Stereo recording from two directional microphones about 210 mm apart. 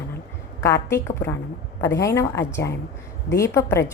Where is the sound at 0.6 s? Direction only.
15° left (ahead or behind).